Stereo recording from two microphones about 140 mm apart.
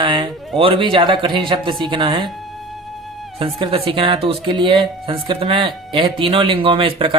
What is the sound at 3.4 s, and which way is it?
Speech, 40° right (ahead or behind).